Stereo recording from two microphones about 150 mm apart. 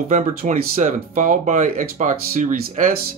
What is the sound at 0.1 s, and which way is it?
Speech, 60° right (ahead or behind).